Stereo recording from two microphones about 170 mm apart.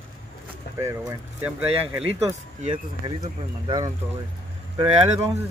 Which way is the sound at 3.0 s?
30° right (ahead or behind).